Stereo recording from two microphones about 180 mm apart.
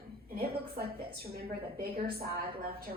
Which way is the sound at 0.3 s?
60° right (ahead or behind).